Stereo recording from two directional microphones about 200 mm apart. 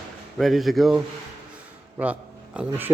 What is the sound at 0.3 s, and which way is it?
A man's voice, centre (ahead or behind).